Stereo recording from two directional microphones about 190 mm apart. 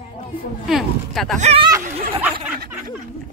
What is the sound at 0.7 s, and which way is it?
Speech, centre (ahead or behind).